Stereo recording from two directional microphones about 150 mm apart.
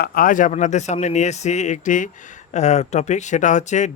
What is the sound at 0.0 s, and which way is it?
Speech, 80° left.